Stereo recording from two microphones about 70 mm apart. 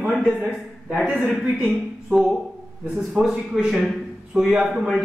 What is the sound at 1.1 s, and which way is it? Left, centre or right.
A man's voice, centre.